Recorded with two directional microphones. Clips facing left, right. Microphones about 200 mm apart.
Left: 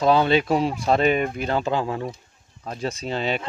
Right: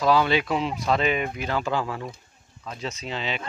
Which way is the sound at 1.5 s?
25° left (ahead or behind).